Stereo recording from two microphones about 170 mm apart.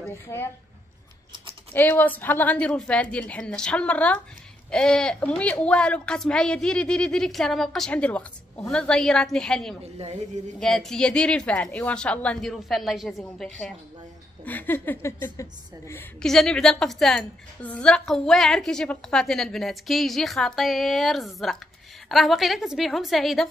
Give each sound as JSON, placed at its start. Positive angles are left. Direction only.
{"t": 0.3, "sound": "a woman's voice", "side_deg": 20}
{"t": 1.7, "sound": "a woman's voice", "side_deg": 10}
{"t": 9.9, "sound": "speech", "side_deg": -35}
{"t": 10.6, "sound": "a woman's voice", "side_deg": 0}